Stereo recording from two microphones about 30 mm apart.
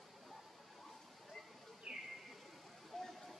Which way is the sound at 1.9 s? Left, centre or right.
Right.